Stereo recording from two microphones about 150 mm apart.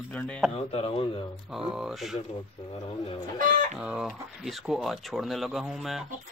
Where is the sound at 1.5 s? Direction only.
5° right (ahead or behind).